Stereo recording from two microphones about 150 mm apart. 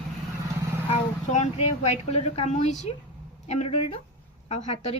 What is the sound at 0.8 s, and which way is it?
Speech, 45° left (ahead or behind).